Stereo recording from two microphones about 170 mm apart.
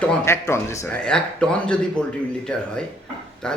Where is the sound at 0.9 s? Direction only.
5° left (ahead or behind).